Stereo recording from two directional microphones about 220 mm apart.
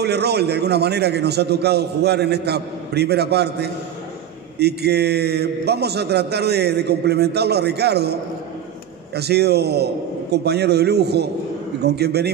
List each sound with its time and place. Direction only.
0.0 s a man's voice: 50° right (ahead or behind)